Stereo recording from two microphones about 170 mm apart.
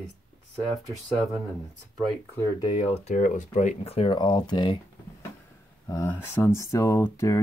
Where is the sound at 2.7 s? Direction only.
35° left (ahead or behind).